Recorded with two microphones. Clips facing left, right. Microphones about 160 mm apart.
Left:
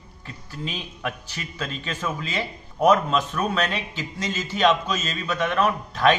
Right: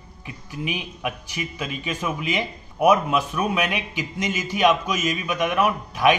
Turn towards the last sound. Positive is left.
turn(degrees=-10)  # may be behind; listen again after turning